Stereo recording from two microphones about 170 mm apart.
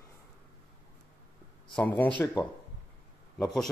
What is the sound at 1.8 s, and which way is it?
Speech, 10° left (ahead or behind).